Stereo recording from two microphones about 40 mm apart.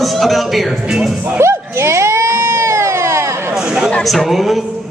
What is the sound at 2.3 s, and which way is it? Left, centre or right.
Baby cry, right.